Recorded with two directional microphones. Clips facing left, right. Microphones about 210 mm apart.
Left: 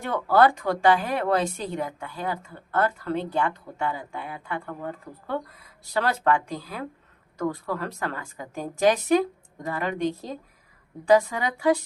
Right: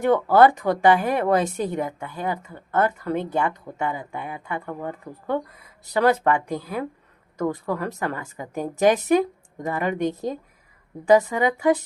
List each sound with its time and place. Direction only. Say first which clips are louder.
0.0 s a woman's voice: right 4 dB; 15° right (ahead or behind)
11.0 s a woman's voice: right 3 dB; 20° right (ahead or behind)